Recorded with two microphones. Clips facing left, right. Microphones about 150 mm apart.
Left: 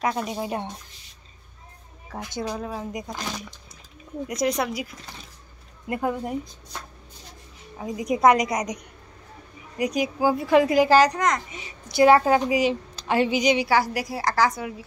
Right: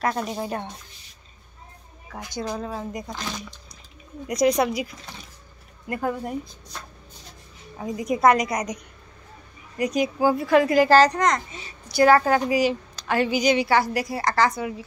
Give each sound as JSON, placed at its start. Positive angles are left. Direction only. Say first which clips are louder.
{"t": 0.0, "sound": "a woman's voice", "louder": "even", "side_deg": 10}
{"t": 2.4, "sound": "a woman's voice", "louder": "right 1 dB", "side_deg": 10}
{"t": 4.3, "sound": "speech", "louder": "right 5 dB", "side_deg": 0}
{"t": 5.9, "sound": "a woman's voice", "louder": "left 1 dB", "side_deg": 15}
{"t": 7.7, "sound": "a woman's voice", "louder": "right 1 dB", "side_deg": 5}
{"t": 8.0, "sound": "a woman's voice", "louder": "even", "side_deg": 15}
{"t": 11.5, "sound": "a woman's voice", "louder": "even", "side_deg": 20}